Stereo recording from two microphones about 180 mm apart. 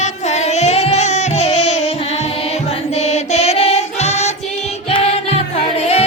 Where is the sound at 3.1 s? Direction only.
35° left (ahead or behind).